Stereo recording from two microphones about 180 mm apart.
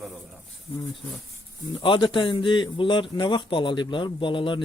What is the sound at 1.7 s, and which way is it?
A man's voice, 25° left (ahead or behind).